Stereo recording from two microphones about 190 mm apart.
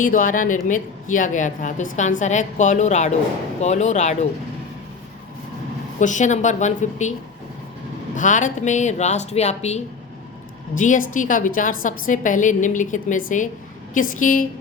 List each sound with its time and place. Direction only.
0.0 s a woman's voice: 45° left (ahead or behind)
6.0 s a woman's voice: 40° left (ahead or behind)
8.1 s a woman's voice: 40° left (ahead or behind)